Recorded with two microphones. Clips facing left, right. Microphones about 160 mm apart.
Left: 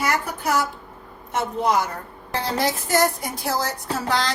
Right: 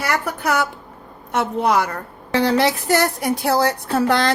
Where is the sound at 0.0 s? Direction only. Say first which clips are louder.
Right 2 dB; 70° right (ahead or behind).